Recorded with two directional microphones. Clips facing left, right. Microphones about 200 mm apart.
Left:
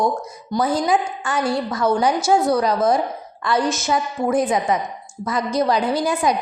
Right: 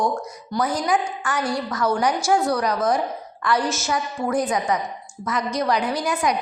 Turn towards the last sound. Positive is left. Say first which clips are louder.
# left 3 dB
turn(degrees=25)  # may be behind; listen again after turning